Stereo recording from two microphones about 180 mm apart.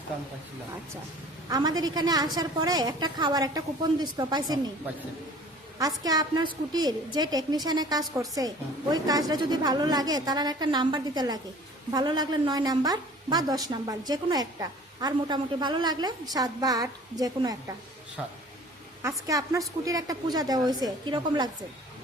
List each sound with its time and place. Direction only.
1.5 s a woman's voice: 20° right (ahead or behind)
5.8 s a woman's voice: 20° right (ahead or behind)
18.2 s speech: 5° right (ahead or behind)
19.0 s a woman's voice: 20° right (ahead or behind)